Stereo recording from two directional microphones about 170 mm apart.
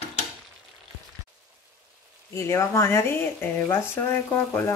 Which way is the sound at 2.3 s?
15° left (ahead or behind).